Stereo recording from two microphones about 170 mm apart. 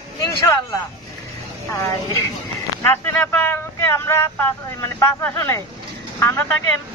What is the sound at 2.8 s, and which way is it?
Speech, 10° left (ahead or behind).